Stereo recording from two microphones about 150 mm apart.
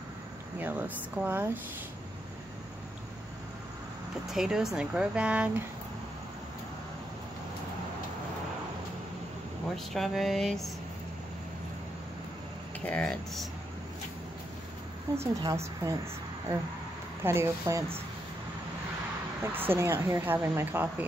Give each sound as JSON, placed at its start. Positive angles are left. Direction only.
{"t": 0.6, "sound": "speech", "side_deg": -10}
{"t": 4.3, "sound": "speech", "side_deg": -5}
{"t": 9.9, "sound": "speech", "side_deg": 0}
{"t": 12.8, "sound": "speech", "side_deg": 5}
{"t": 15.1, "sound": "a woman's voice", "side_deg": -20}
{"t": 17.2, "sound": "speech", "side_deg": -15}
{"t": 19.4, "sound": "speech", "side_deg": -15}